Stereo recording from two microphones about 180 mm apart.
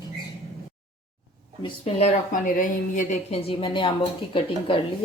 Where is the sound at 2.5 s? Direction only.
50° left (ahead or behind).